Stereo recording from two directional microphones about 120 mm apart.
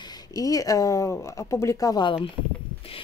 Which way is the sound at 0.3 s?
30° left (ahead or behind).